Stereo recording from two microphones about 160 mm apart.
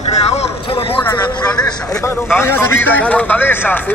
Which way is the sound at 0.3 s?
35° left (ahead or behind).